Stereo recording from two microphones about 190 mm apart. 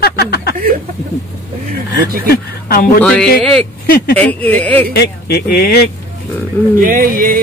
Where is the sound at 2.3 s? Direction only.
50° left (ahead or behind).